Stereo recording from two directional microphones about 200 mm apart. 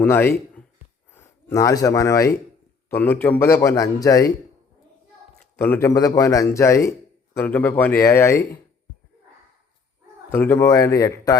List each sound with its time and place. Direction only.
0.0 s speech: 10° left (ahead or behind)
5.4 s speech: 10° left (ahead or behind)
10.3 s speech: 10° left (ahead or behind)